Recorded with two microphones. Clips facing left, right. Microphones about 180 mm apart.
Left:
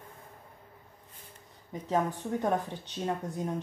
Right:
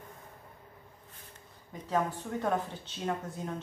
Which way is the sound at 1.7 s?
15° left (ahead or behind).